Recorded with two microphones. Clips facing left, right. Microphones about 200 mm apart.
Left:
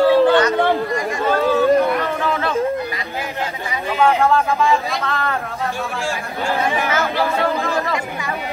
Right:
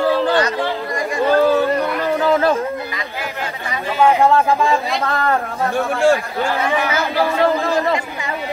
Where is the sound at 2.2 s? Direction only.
35° right (ahead or behind).